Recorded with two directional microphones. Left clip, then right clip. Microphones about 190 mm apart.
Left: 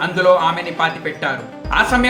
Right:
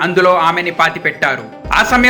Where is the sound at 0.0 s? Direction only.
35° right (ahead or behind).